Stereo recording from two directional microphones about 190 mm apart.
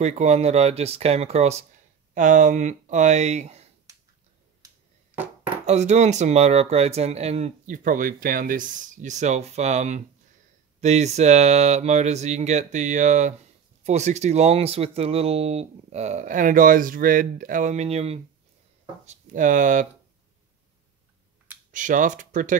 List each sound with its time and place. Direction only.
0.0 s speech: 35° right (ahead or behind)
5.1 s speech: 10° right (ahead or behind)
5.7 s speech: 35° right (ahead or behind)
21.7 s speech: 45° right (ahead or behind)